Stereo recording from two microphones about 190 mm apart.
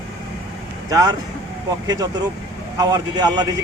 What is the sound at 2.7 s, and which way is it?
Speech, 20° right (ahead or behind).